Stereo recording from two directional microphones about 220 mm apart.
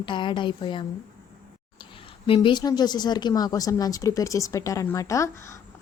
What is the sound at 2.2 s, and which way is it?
Speech, 25° left (ahead or behind).